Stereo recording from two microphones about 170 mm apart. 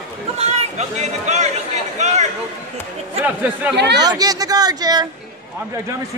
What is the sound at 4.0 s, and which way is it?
Speech, 25° right (ahead or behind).